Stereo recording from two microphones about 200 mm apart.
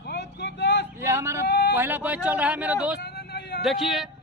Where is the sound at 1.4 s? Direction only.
55° left (ahead or behind).